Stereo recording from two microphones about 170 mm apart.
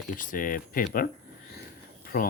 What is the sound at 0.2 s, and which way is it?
Speech, 55° left (ahead or behind).